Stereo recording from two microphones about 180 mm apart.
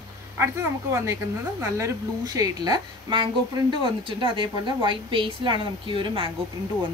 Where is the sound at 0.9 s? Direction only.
15° right (ahead or behind).